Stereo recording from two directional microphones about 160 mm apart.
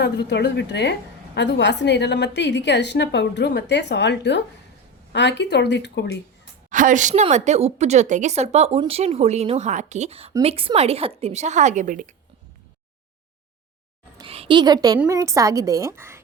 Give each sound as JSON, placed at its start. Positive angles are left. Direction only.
{"t": 0.0, "sound": "a woman's voice", "side_deg": 90}
{"t": 6.7, "sound": "a woman's voice", "side_deg": -55}
{"t": 14.2, "sound": "a sound", "side_deg": -35}
{"t": 15.1, "sound": "a woman's voice", "side_deg": -20}